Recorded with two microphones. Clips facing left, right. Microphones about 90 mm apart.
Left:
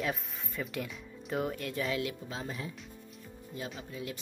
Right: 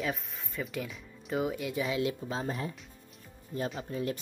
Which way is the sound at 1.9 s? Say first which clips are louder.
Right 3 dB; 25° right (ahead or behind).